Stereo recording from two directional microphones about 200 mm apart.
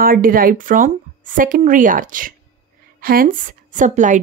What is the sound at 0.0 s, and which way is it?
A woman's voice, 45° right (ahead or behind).